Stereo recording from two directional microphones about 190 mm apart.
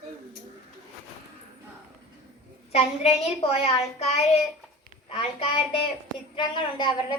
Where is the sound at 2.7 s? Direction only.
35° left (ahead or behind).